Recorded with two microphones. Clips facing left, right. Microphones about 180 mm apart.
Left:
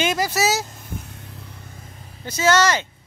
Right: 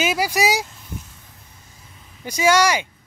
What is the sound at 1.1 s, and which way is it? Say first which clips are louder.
Vehicle: left 9 dB; 70° left (ahead or behind).